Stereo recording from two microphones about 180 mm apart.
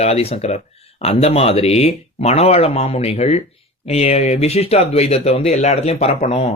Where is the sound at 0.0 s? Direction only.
35° left (ahead or behind).